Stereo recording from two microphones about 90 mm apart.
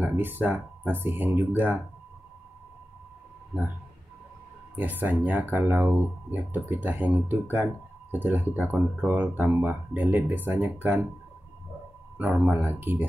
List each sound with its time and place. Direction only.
0.0 s speech: 20° right (ahead or behind)
4.7 s speech: 20° right (ahead or behind)
12.2 s speech: 15° right (ahead or behind)